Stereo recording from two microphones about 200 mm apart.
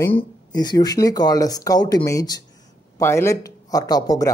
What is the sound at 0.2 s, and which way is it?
Speech, 20° left (ahead or behind).